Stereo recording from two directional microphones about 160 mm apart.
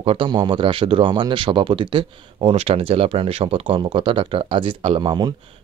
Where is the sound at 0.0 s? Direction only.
35° right (ahead or behind).